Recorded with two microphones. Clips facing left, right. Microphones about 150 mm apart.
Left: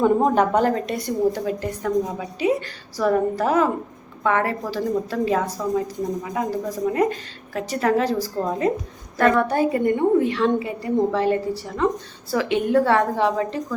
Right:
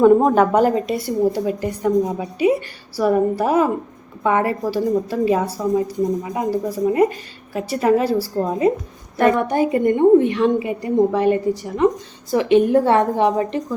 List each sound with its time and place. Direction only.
0.0 s a woman's voice: 5° right (ahead or behind); by 13.7 s 20° right (ahead or behind)